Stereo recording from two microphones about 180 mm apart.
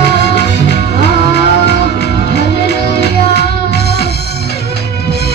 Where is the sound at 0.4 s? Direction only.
70° left (ahead or behind).